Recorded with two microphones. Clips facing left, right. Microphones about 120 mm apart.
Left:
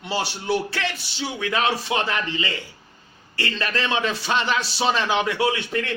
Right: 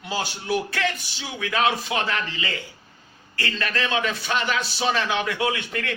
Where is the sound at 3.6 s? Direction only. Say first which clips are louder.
Left 1 dB; 30° left (ahead or behind).